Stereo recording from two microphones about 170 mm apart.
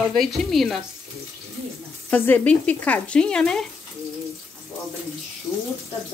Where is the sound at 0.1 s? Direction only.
Centre (ahead or behind).